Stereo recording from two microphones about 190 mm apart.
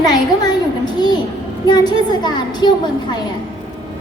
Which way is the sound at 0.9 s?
20° left (ahead or behind).